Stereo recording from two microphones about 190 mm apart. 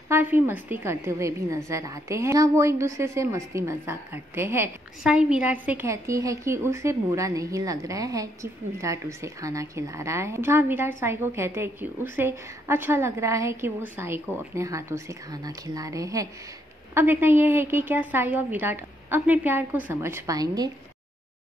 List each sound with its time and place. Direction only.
0.1 s a woman's voice: 10° right (ahead or behind)